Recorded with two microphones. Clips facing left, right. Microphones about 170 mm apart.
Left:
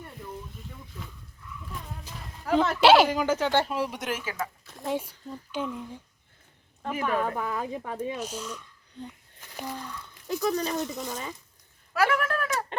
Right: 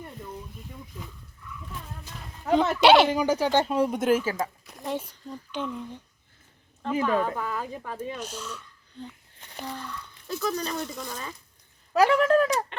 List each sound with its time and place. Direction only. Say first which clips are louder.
2.0 s a sound: right 3 dB; 5° left (ahead or behind)
2.8 s speech: even; 5° left (ahead or behind)
3.1 s speech: right 2 dB; 15° right (ahead or behind)
3.8 s speech: right 9 dB; 45° right (ahead or behind)
4.8 s speech: left 1 dB; 10° left (ahead or behind)
6.9 s speech: right 3 dB; 25° right (ahead or behind)
7.3 s speech: left 1 dB; 15° left (ahead or behind)
12.3 s speech: right 9 dB; 35° right (ahead or behind)